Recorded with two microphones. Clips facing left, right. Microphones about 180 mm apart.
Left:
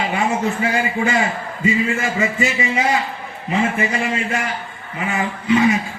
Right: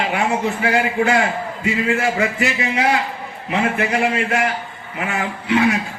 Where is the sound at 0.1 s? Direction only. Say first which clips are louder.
Even; 65° right (ahead or behind).